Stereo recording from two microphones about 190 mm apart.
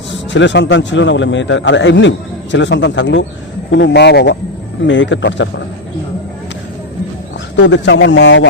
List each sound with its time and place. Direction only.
0.3 s a man's voice: 70° left (ahead or behind)
4.9 s a man's voice: 75° left (ahead or behind)
7.5 s a man's voice: 70° left (ahead or behind)